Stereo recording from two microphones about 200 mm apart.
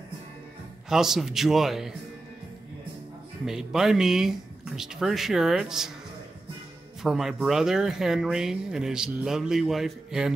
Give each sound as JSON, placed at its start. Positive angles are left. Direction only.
{"t": 0.8, "sound": "speech", "side_deg": 0}
{"t": 3.4, "sound": "speech", "side_deg": 0}
{"t": 7.0, "sound": "speech", "side_deg": 0}